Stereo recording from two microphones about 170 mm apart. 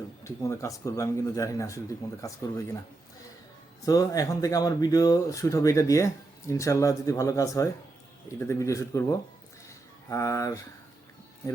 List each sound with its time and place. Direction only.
0.3 s speech: 15° left (ahead or behind)
3.8 s speech: 20° left (ahead or behind)
9.6 s a sound: 15° left (ahead or behind)